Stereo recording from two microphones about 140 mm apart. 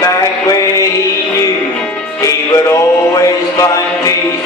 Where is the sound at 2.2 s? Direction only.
25° left (ahead or behind).